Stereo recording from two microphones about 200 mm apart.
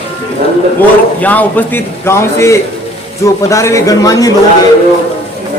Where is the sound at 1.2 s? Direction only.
10° left (ahead or behind).